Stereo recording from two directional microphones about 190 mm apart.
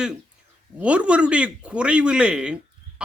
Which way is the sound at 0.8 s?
5° right (ahead or behind).